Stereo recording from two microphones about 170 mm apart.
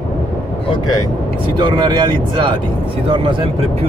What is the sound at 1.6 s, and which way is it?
Speech, 25° right (ahead or behind).